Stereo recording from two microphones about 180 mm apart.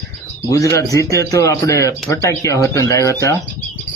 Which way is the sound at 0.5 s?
15° left (ahead or behind).